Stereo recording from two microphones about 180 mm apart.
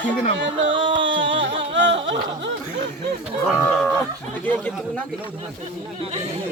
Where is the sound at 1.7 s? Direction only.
90° right.